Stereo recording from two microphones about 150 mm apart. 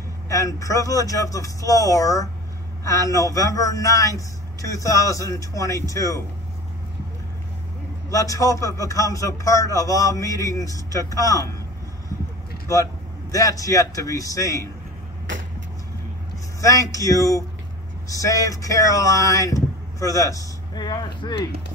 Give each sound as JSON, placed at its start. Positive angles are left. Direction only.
{"t": 0.3, "sound": "speech", "side_deg": 20}
{"t": 8.1, "sound": "speech", "side_deg": 20}
{"t": 13.3, "sound": "speech", "side_deg": 20}
{"t": 16.6, "sound": "speech", "side_deg": 20}